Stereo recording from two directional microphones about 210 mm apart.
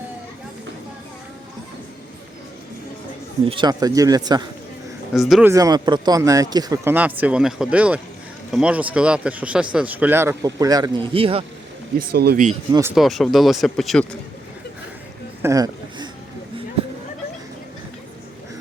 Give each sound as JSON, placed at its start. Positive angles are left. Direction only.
{"t": 3.4, "sound": "a man's voice", "side_deg": -25}
{"t": 5.1, "sound": "speech", "side_deg": 0}
{"t": 5.5, "sound": "speech", "side_deg": -15}
{"t": 11.9, "sound": "speech", "side_deg": -50}
{"t": 12.9, "sound": "speech", "side_deg": 0}
{"t": 15.4, "sound": "a sound", "side_deg": -15}